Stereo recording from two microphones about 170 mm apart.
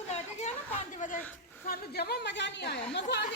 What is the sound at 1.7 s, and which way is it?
A woman's voice, 65° left (ahead or behind).